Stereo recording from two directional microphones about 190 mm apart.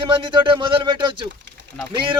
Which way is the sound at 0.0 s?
25° right (ahead or behind).